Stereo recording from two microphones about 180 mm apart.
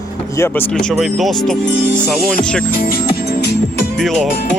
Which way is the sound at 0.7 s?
Centre (ahead or behind).